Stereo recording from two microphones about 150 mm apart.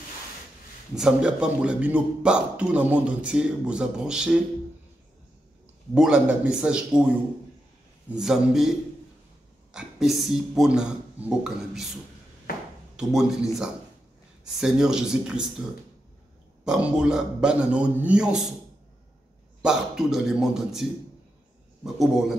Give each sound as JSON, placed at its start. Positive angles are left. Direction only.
{"t": 0.9, "sound": "speech", "side_deg": -5}
{"t": 5.9, "sound": "speech", "side_deg": -5}
{"t": 8.1, "sound": "a man's voice", "side_deg": -5}
{"t": 12.5, "sound": "finger snapping", "side_deg": 90}
{"t": 12.9, "sound": "a man's voice", "side_deg": -5}
{"t": 16.6, "sound": "speech", "side_deg": -5}
{"t": 19.6, "sound": "a man's voice", "side_deg": -5}
{"t": 21.8, "sound": "a man's voice", "side_deg": 0}